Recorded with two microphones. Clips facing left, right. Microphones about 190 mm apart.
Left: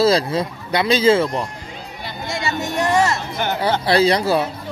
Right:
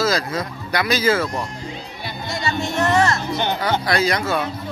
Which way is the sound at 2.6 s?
15° left (ahead or behind).